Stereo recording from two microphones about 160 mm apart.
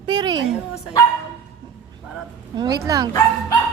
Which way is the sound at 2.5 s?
25° right (ahead or behind).